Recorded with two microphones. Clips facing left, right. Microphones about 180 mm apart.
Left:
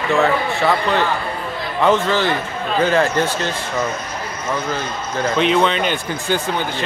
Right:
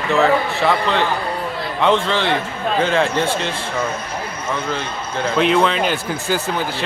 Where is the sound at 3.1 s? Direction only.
30° right (ahead or behind).